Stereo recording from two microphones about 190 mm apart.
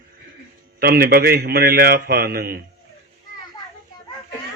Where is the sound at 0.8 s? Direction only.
55° right (ahead or behind).